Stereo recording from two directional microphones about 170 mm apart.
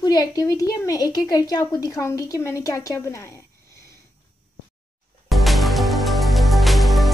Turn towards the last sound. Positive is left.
turn(degrees=0)  # may be behind; listen again after turning